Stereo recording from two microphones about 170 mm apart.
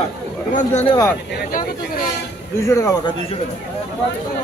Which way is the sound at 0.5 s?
50° left (ahead or behind).